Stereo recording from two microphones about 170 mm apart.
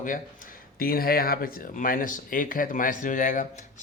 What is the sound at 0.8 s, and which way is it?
Speech, 60° left (ahead or behind).